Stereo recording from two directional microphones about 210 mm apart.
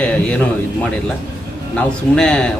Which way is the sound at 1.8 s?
5° left (ahead or behind).